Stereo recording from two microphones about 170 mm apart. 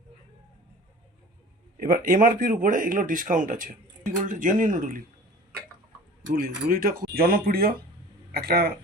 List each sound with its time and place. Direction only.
1.8 s speech: 55° right (ahead or behind)
6.2 s speech: 55° right (ahead or behind)